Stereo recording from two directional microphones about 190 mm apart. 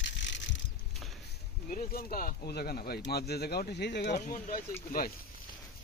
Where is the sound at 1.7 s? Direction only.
50° left (ahead or behind).